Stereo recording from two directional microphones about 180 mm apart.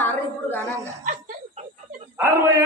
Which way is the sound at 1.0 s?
45° right (ahead or behind).